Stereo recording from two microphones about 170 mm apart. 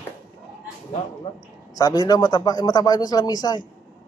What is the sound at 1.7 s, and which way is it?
A man's voice, 20° left (ahead or behind).